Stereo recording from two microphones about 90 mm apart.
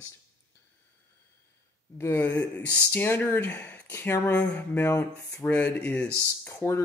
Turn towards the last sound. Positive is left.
turn(degrees=30)  # may be behind; listen again after turning